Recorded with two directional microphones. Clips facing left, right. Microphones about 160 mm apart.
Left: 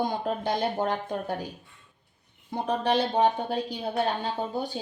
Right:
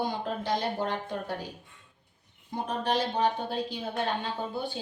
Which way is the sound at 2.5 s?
65° left (ahead or behind).